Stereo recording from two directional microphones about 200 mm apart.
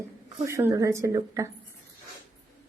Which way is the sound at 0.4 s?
15° right (ahead or behind).